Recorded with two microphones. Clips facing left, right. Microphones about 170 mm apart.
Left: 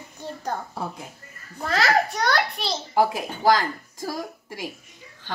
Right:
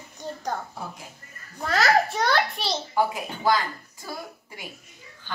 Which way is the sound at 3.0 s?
90° left.